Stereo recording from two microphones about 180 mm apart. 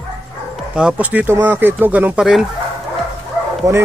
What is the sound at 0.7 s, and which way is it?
A man's voice, 5° right (ahead or behind).